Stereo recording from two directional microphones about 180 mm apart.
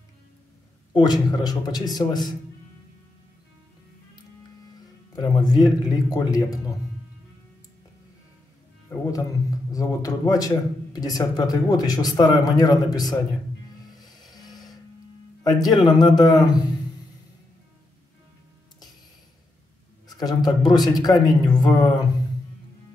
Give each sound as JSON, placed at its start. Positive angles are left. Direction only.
{"t": 0.9, "sound": "speech", "side_deg": 20}
{"t": 5.1, "sound": "speech", "side_deg": 20}
{"t": 8.8, "sound": "speech", "side_deg": 15}
{"t": 14.3, "sound": "printer", "side_deg": 20}
{"t": 15.4, "sound": "speech", "side_deg": 20}
{"t": 20.1, "sound": "speech", "side_deg": 20}